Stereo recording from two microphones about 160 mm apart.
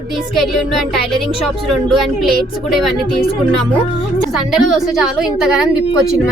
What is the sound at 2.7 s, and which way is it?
Speech, centre (ahead or behind).